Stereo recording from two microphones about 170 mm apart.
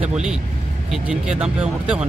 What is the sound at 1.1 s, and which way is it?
Speech, 5° right (ahead or behind).